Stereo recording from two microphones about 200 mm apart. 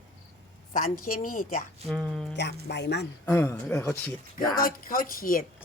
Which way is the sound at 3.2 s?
10° left (ahead or behind).